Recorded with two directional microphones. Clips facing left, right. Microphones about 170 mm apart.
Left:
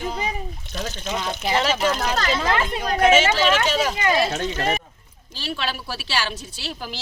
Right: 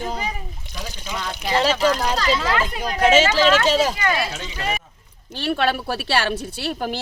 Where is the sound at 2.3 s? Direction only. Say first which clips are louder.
Even; 25° left (ahead or behind).